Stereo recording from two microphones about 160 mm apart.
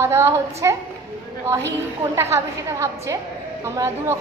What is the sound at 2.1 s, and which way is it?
A woman's voice, 20° right (ahead or behind).